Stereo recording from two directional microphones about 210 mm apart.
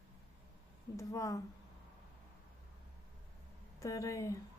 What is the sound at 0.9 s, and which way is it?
Speech, 15° left (ahead or behind).